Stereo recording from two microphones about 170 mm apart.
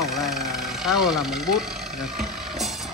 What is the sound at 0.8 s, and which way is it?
Vehicle, centre (ahead or behind).